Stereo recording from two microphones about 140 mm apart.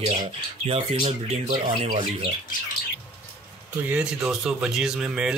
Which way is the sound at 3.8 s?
5° right (ahead or behind).